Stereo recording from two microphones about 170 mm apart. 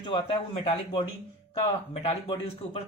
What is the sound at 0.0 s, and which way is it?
A man's voice, 30° left (ahead or behind).